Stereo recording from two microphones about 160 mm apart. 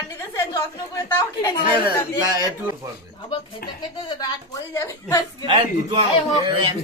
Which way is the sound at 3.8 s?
25° left (ahead or behind).